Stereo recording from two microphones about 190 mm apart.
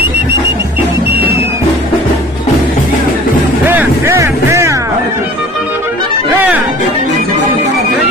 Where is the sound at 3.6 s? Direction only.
15° right (ahead or behind).